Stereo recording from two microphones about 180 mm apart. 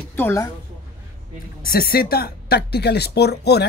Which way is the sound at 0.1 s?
10° left (ahead or behind).